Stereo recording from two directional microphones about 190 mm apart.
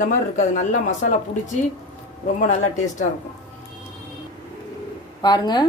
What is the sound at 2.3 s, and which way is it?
Speech, 40° left (ahead or behind).